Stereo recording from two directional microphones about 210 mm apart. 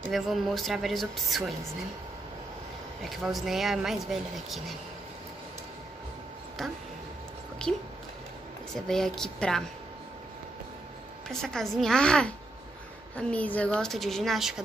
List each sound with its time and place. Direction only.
0.1 s speech: centre (ahead or behind)
3.0 s speech: centre (ahead or behind)
6.6 s speech: centre (ahead or behind)
8.8 s speech: centre (ahead or behind)
11.2 s speech: centre (ahead or behind)